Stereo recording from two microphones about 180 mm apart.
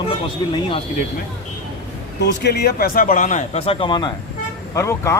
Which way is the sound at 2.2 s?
70° left (ahead or behind).